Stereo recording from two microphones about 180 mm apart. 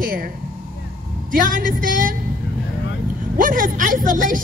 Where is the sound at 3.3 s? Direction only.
50° right (ahead or behind).